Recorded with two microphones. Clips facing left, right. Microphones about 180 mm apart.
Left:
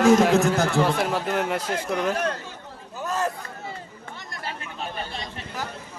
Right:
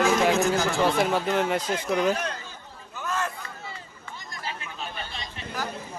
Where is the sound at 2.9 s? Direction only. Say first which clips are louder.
Left 4 dB; 35° left (ahead or behind); by 4.9 s 65° left (ahead or behind).